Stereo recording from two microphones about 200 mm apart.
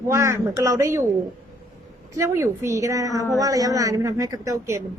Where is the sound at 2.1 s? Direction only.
15° right (ahead or behind).